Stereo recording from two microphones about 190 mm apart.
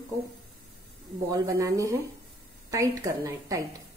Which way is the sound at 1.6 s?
15° right (ahead or behind).